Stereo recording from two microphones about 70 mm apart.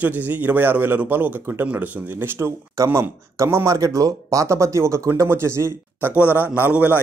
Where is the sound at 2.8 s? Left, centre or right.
Right.